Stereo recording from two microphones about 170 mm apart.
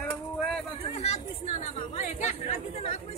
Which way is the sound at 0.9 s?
40° left (ahead or behind).